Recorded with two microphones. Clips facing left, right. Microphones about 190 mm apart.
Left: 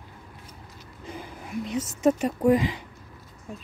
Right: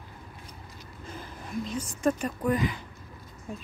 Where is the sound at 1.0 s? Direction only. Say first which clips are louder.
Left 3 dB; 15° left (ahead or behind).